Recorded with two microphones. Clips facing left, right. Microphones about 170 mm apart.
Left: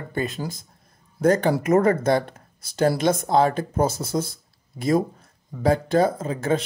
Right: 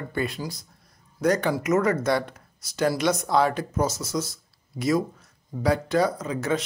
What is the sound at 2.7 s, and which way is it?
Speech, 30° left (ahead or behind).